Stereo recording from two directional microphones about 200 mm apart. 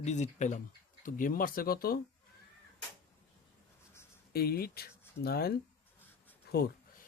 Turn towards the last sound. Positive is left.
turn(degrees=50)  # may be behind; listen again after turning